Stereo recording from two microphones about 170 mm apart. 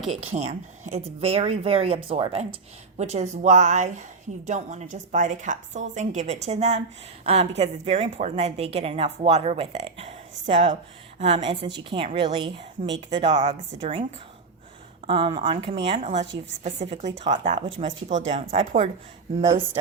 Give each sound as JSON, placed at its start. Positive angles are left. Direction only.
{"t": 0.0, "sound": "a woman's voice", "side_deg": 0}
{"t": 0.3, "sound": "a woman's voice", "side_deg": -40}
{"t": 13.2, "sound": "a woman's voice", "side_deg": -45}
{"t": 15.0, "sound": "a woman's voice", "side_deg": -30}
{"t": 16.0, "sound": "a woman's voice", "side_deg": -50}
{"t": 17.8, "sound": "a woman's voice", "side_deg": -35}